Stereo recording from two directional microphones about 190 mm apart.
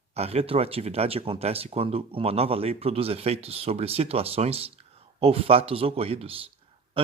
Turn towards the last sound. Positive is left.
turn(degrees=-30)  # may be behind; listen again after turning